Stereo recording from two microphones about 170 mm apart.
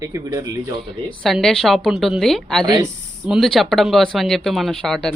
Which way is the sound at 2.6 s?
25° right (ahead or behind).